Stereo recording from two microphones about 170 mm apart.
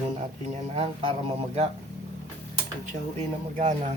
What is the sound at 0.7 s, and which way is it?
Speech, 35° right (ahead or behind).